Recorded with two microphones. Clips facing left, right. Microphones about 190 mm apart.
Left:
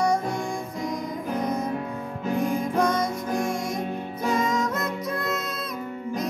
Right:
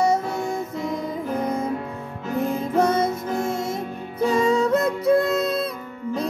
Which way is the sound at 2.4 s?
25° right (ahead or behind).